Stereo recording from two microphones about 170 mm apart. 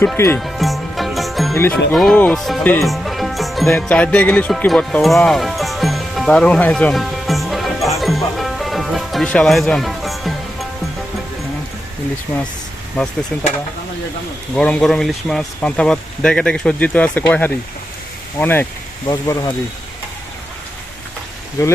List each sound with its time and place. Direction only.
0.3 s music: centre (ahead or behind)
1.5 s speech: 15° left (ahead or behind)
2.8 s music: centre (ahead or behind)
13.3 s speech: 10° left (ahead or behind)
14.5 s speech: 5° left (ahead or behind)
19.0 s speech: 20° left (ahead or behind)